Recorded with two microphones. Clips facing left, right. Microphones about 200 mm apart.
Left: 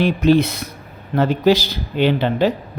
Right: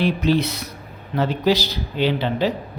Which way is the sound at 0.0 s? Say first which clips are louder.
Left 5 dB; 50° left (ahead or behind).